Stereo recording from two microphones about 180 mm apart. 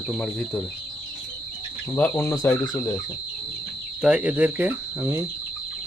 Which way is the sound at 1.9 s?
10° left (ahead or behind).